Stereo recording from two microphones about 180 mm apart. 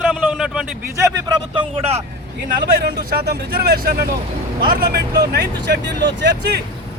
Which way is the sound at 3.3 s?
65° right (ahead or behind).